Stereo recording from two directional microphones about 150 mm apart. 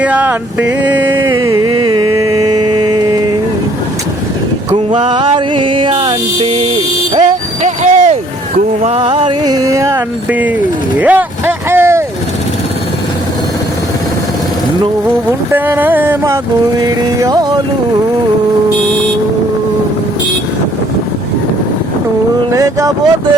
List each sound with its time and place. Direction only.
0.0 s a sound: 10° right (ahead or behind)
1.7 s music: 30° right (ahead or behind)
5.0 s music: 35° right (ahead or behind); by 10.5 s 10° right (ahead or behind)
10.9 s vehicle: 10° right (ahead or behind)
15.5 s a sound: 10° right (ahead or behind)
22.5 s music: 25° right (ahead or behind)